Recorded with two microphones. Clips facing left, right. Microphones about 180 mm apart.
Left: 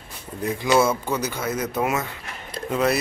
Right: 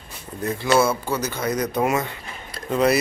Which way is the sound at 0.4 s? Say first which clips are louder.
Even; 15° left (ahead or behind).